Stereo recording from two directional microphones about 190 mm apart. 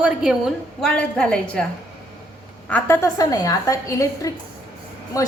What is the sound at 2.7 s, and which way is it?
A woman's voice, 10° left (ahead or behind).